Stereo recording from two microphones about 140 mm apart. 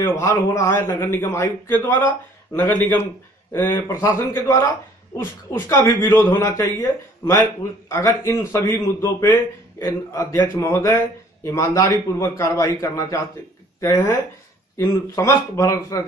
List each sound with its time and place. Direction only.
0.0 s a man's voice: 20° left (ahead or behind)